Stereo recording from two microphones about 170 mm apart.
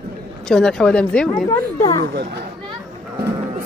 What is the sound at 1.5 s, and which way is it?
Speech, 20° left (ahead or behind).